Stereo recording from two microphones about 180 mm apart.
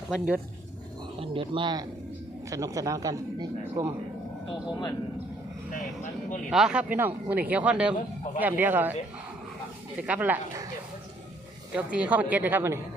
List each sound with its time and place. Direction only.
0.1 s speech: 5° right (ahead or behind)
1.2 s speech: 30° right (ahead or behind)
4.6 s speech: 25° left (ahead or behind)
6.5 s speech: 5° right (ahead or behind)
10.0 s speech: 10° right (ahead or behind)
11.7 s speech: 5° right (ahead or behind)